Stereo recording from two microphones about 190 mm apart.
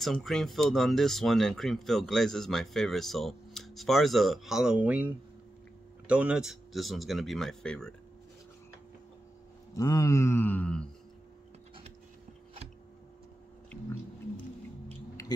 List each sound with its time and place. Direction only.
0.0 s speech: centre (ahead or behind)
9.8 s mantra: 15° left (ahead or behind)
14.9 s a sound: 15° left (ahead or behind)